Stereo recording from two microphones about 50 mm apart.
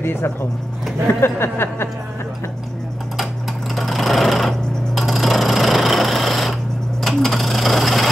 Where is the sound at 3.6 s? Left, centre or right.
Centre.